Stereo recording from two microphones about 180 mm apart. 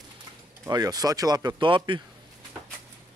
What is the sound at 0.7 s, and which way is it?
Speech, 20° right (ahead or behind).